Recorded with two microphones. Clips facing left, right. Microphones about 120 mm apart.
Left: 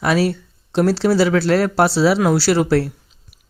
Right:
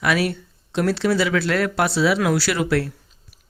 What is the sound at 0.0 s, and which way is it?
Speech, 30° left (ahead or behind).